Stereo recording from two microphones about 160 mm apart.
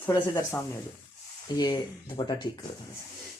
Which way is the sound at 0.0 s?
20° left (ahead or behind).